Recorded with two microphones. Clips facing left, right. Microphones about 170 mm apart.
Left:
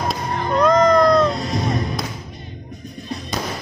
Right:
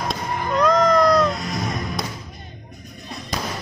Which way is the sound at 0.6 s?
Centre (ahead or behind).